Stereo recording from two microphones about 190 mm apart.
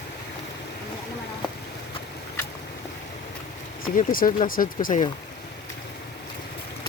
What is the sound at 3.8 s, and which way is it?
Speech, 45° left (ahead or behind).